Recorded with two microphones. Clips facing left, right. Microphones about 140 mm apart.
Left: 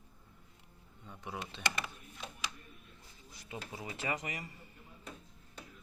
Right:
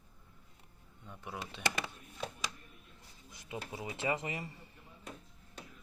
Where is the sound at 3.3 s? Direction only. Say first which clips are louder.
Right 2 dB; 20° right (ahead or behind).